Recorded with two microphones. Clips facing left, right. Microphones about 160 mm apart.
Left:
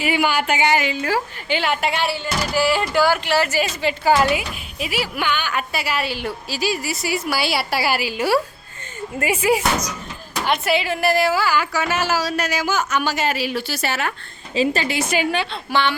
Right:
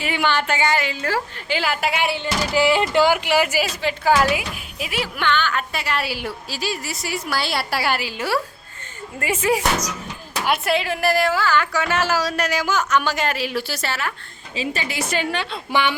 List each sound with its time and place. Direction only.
0.0 s a woman's voice: 10° left (ahead or behind)
1.5 s a woman's voice: centre (ahead or behind)
2.0 s speech: 20° right (ahead or behind)
3.7 s a woman's voice: centre (ahead or behind)
6.1 s a woman's voice: 5° right (ahead or behind)
13.8 s speech: 20° left (ahead or behind)
15.1 s a woman's voice: 10° left (ahead or behind)
15.7 s speech: 15° right (ahead or behind)